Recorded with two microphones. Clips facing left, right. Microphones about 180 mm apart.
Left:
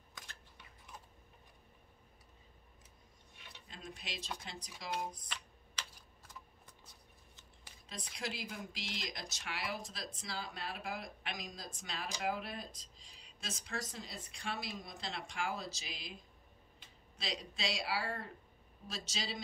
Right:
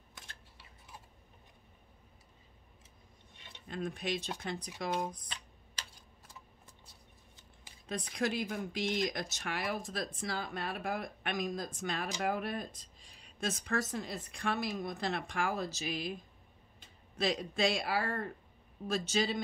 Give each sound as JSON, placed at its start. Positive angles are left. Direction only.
{"t": 3.6, "sound": "speech", "side_deg": -55}
{"t": 7.9, "sound": "speech", "side_deg": -55}
{"t": 17.2, "sound": "speech", "side_deg": -55}